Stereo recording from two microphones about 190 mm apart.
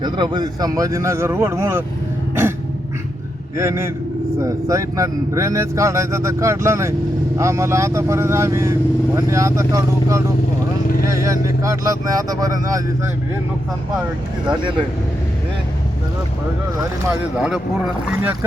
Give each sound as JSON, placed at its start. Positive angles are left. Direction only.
{"t": 0.0, "sound": "speech", "side_deg": -25}
{"t": 3.6, "sound": "speech", "side_deg": -15}
{"t": 17.0, "sound": "speech", "side_deg": -10}